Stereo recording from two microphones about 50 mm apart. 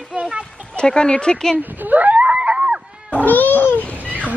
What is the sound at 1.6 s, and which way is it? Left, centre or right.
Screaming, right.